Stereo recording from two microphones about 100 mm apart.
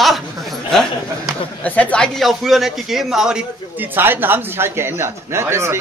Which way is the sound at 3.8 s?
20° right (ahead or behind).